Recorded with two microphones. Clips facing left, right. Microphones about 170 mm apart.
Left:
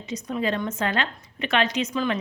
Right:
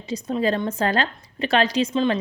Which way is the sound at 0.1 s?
30° right (ahead or behind).